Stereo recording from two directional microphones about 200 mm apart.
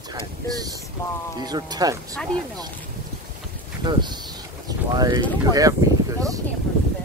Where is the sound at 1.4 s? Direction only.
20° right (ahead or behind).